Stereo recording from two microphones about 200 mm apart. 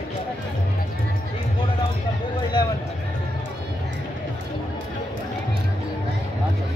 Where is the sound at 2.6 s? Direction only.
20° left (ahead or behind).